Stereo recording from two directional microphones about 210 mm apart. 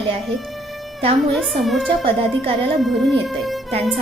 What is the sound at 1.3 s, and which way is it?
Speech, centre (ahead or behind).